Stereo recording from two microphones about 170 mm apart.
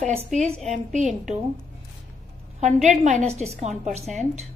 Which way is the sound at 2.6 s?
40° right (ahead or behind).